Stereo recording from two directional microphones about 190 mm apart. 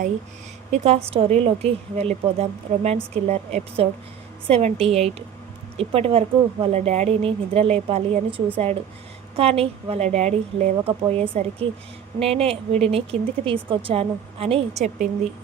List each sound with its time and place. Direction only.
0.7 s a woman's voice: 35° right (ahead or behind)